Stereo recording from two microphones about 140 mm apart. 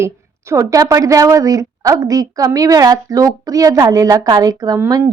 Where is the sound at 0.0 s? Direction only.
20° right (ahead or behind).